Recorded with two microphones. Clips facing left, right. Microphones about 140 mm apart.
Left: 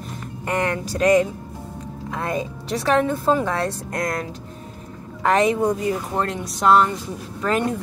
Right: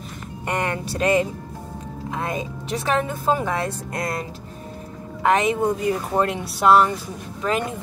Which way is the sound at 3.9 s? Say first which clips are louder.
Left 2 dB; 25° right (ahead or behind).